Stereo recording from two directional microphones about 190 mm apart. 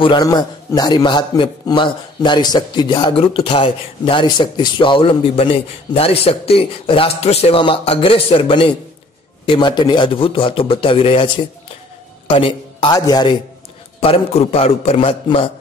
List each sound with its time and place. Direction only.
0.0 s a man's voice: 20° left (ahead or behind)